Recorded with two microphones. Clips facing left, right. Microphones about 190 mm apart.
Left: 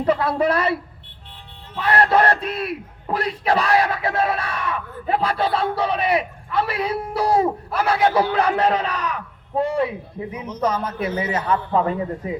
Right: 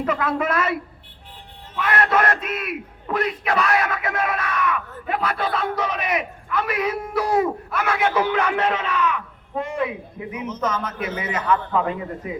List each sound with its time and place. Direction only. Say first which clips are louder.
0.0 s a man's voice: left 4 dB; 35° left (ahead or behind)